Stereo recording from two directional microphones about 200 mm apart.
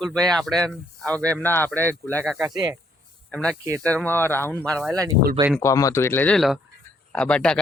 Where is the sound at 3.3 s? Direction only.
5° left (ahead or behind).